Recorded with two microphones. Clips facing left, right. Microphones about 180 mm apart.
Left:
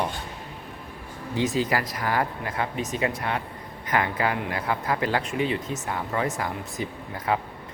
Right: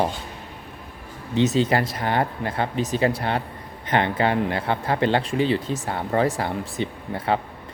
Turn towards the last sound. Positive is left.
turn(degrees=-30)  # may be behind; listen again after turning